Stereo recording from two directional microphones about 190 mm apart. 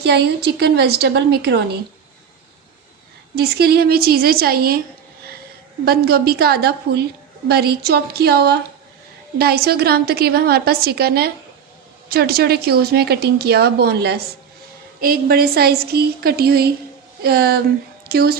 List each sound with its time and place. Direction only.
0.0 s a woman's voice: 60° right (ahead or behind)
3.3 s a woman's voice: 55° right (ahead or behind)
5.8 s a woman's voice: 55° right (ahead or behind)